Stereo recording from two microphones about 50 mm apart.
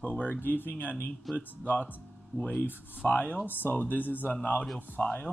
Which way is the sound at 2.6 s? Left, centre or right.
Left.